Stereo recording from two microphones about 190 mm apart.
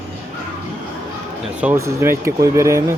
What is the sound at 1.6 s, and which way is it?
Speech, 10° right (ahead or behind).